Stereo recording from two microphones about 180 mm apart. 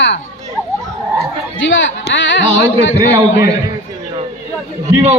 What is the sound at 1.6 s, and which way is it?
Speech, 90° left.